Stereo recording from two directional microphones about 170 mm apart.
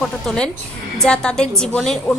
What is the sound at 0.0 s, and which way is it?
A woman's voice, 5° left (ahead or behind).